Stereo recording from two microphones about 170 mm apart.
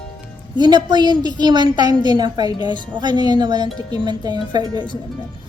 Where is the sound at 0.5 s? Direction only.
25° right (ahead or behind).